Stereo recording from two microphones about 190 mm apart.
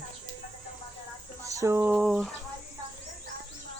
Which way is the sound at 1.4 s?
15° right (ahead or behind).